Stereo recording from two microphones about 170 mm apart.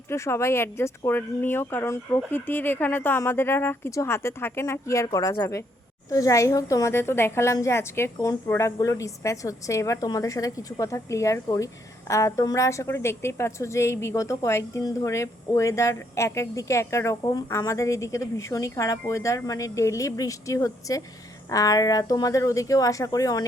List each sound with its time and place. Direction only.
0.1 s a woman's voice: 15° left (ahead or behind)